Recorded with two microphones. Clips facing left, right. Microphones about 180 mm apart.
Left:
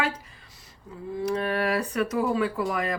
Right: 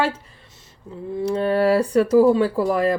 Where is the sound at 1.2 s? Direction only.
30° right (ahead or behind).